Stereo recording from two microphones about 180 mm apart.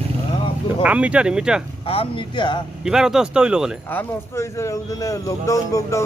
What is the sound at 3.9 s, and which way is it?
A man's voice, 10° left (ahead or behind).